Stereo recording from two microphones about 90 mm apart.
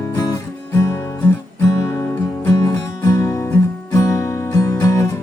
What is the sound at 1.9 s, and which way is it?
Music, 35° left (ahead or behind).